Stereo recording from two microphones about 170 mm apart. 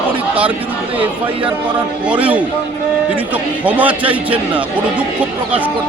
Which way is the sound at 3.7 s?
10° right (ahead or behind).